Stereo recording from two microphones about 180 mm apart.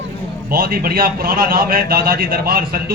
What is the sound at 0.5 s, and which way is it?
A man's voice, 55° right (ahead or behind).